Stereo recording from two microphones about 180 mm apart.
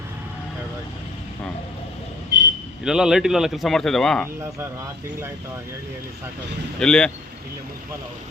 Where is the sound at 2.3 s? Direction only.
70° right (ahead or behind).